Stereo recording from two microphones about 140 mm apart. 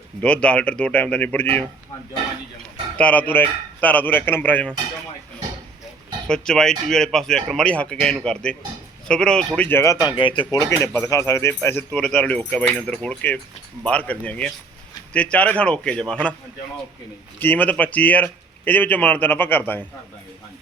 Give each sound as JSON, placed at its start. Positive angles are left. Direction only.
{"t": 0.2, "sound": "speech", "side_deg": 10}
{"t": 3.0, "sound": "speech", "side_deg": 10}
{"t": 6.2, "sound": "speech", "side_deg": 5}
{"t": 10.5, "sound": "speech", "side_deg": 20}
{"t": 17.4, "sound": "speech", "side_deg": 10}